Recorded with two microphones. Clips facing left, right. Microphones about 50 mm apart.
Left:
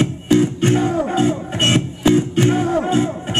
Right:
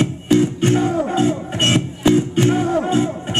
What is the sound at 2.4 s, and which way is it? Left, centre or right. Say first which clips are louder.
Music: even; centre.